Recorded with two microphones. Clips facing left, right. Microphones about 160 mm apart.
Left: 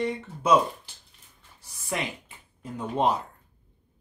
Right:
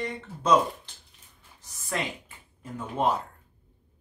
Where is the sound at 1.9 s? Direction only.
15° left (ahead or behind).